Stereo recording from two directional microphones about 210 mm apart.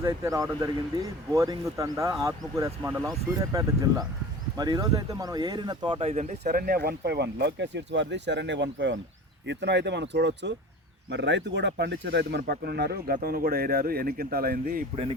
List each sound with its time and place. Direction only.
0.0 s speech: 15° right (ahead or behind); by 6.3 s 30° right (ahead or behind)
6.4 s speech: 45° right (ahead or behind)